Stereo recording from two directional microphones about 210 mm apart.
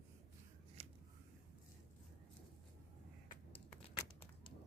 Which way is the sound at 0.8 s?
30° right (ahead or behind).